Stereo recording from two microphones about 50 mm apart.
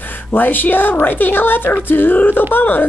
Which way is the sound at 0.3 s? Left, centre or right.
Left.